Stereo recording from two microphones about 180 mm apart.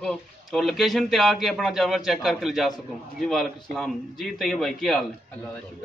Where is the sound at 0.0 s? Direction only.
Centre (ahead or behind).